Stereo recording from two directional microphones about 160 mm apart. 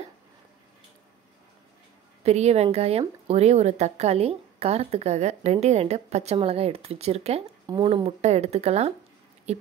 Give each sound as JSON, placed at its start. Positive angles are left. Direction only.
{"t": 2.2, "sound": "speech", "side_deg": -45}